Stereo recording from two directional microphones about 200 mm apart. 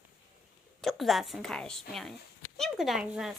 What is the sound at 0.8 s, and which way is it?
A woman's voice, centre (ahead or behind).